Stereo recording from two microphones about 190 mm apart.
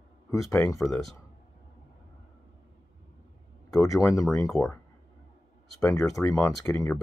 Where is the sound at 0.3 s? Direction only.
15° left (ahead or behind).